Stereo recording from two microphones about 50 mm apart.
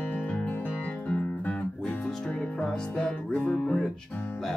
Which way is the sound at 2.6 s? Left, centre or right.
Centre.